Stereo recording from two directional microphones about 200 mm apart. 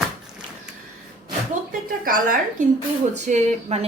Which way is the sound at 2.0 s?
45° right (ahead or behind).